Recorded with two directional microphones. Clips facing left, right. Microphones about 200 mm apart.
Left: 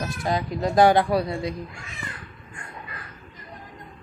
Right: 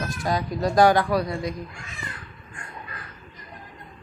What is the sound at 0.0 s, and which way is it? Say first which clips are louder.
Speech: even; 25° left (ahead or behind).